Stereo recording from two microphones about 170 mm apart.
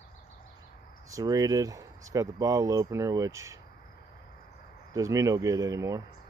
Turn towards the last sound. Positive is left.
turn(degrees=-20)  # may be behind; listen again after turning